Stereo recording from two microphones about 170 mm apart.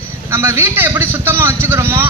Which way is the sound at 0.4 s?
15° right (ahead or behind).